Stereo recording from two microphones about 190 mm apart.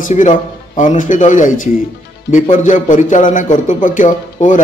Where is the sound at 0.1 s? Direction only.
40° left (ahead or behind).